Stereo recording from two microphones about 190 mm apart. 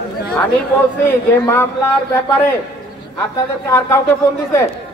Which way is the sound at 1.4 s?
15° left (ahead or behind).